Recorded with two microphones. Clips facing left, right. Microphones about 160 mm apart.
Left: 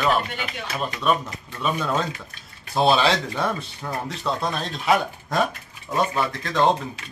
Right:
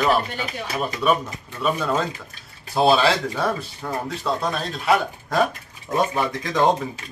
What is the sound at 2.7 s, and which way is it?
Speech, centre (ahead or behind).